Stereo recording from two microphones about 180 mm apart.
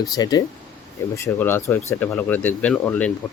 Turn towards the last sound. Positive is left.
turn(degrees=10)  # may be behind; listen again after turning